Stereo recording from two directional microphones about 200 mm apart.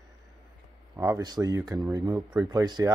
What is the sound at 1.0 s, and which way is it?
Speech, 15° right (ahead or behind).